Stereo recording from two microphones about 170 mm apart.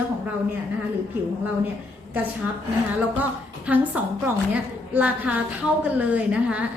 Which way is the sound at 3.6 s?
10° right (ahead or behind).